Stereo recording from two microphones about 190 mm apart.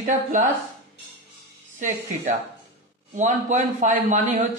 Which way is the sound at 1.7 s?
40° right (ahead or behind).